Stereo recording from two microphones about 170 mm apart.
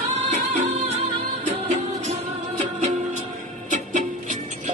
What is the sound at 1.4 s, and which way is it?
Music, 40° right (ahead or behind).